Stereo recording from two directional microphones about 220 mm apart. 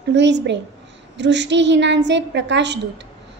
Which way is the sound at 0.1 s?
55° right (ahead or behind).